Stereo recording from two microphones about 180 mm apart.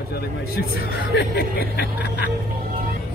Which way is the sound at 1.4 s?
60° left (ahead or behind).